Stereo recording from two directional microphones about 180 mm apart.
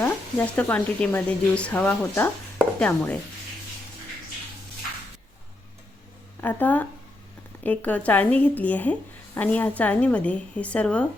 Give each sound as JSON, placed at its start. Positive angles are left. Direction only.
{"t": 0.0, "sound": "speech", "side_deg": 10}
{"t": 2.7, "sound": "chopping", "side_deg": 5}
{"t": 6.4, "sound": "speech", "side_deg": 10}